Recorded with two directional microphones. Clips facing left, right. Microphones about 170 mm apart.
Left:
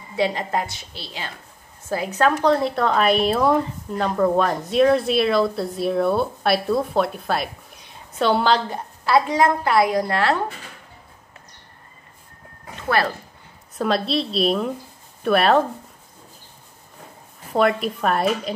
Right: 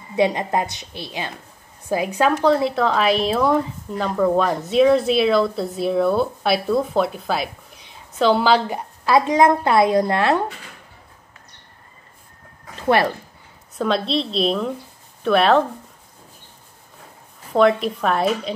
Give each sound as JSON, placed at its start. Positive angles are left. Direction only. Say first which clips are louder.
{"t": 0.1, "sound": "a woman's voice", "louder": "right 3 dB", "side_deg": -20}
{"t": 8.6, "sound": "a woman's voice", "louder": "right 3 dB", "side_deg": -15}
{"t": 12.7, "sound": "speech", "louder": "right 4 dB", "side_deg": -20}
{"t": 13.7, "sound": "a woman's voice", "louder": "right 1 dB", "side_deg": 0}
{"t": 17.5, "sound": "a woman's voice", "louder": "right 3 dB", "side_deg": 0}